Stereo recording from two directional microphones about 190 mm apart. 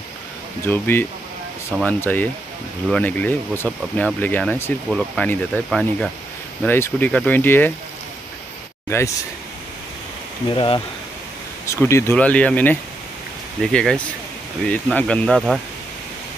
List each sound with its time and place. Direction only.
0.7 s speech: 10° left (ahead or behind)
8.8 s speech: 15° left (ahead or behind)
10.5 s speech: 25° left (ahead or behind)
11.6 s speech: 15° left (ahead or behind)